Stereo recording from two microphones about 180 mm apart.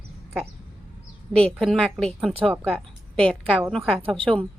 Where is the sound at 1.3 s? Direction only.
5° left (ahead or behind).